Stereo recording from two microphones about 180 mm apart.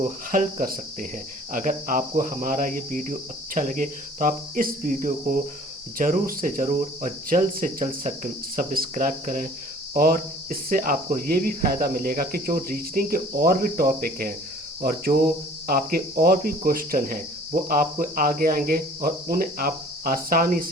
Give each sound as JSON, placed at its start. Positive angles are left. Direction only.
{"t": 0.0, "sound": "speech", "side_deg": -50}